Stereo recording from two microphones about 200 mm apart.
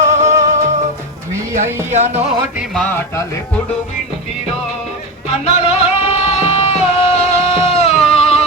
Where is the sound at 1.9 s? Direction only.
35° right (ahead or behind).